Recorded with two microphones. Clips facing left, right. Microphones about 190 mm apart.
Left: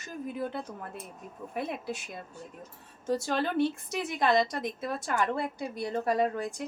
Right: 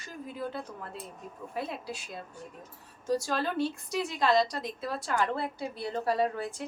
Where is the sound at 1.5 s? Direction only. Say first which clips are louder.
Left 2 dB; 20° left (ahead or behind).